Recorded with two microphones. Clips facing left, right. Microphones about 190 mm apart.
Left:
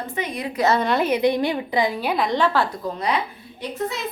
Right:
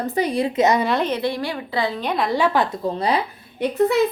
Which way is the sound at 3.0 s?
30° right (ahead or behind).